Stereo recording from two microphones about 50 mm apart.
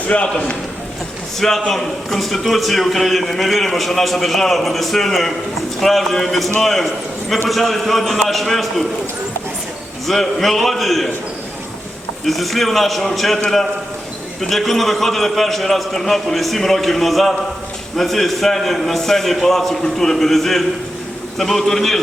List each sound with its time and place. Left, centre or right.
0.1 s a man's voice: left
1.4 s a man's voice: centre
10.1 s a man's voice: centre
12.2 s a man's voice: centre
14.4 s a man's voice: centre